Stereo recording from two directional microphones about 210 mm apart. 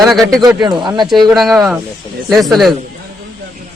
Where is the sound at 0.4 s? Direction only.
20° right (ahead or behind).